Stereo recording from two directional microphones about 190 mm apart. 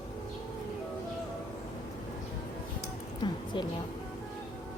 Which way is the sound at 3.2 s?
20° left (ahead or behind).